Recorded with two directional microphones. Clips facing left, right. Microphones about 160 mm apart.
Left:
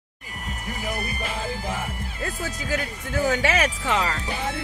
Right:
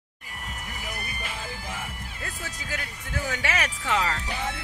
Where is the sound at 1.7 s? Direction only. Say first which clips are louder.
Left 6 dB; 45° left (ahead or behind).